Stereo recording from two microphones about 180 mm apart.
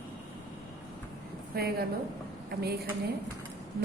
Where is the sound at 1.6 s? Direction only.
60° right (ahead or behind).